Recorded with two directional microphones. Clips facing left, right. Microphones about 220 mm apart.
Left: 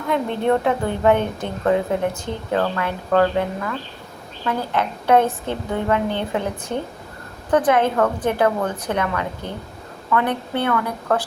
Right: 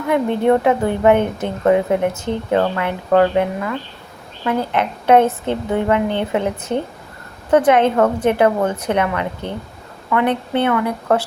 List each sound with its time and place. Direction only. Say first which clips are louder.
0.1 s a woman's voice: right 4 dB; 15° right (ahead or behind)
4.4 s a woman's voice: right 4 dB; 20° right (ahead or behind)